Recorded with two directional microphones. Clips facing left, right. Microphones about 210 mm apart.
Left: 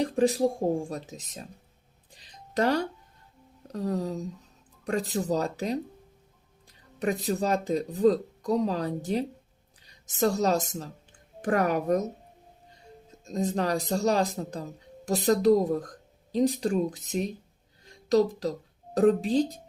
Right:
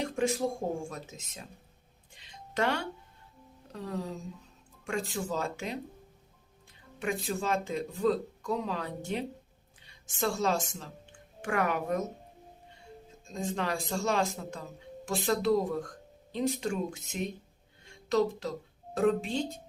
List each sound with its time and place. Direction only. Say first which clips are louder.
0.0 s speech: left 6 dB; 35° left (ahead or behind)
2.1 s music: left 4 dB; 35° left (ahead or behind)
3.7 s speech: left 7 dB; 40° left (ahead or behind)
7.0 s a woman's voice: left 5 dB; 40° left (ahead or behind)
13.2 s speech: left 6 dB; 40° left (ahead or behind)
17.8 s a sound: left 5 dB; 35° left (ahead or behind)
18.9 s speech: left 6 dB; 35° left (ahead or behind)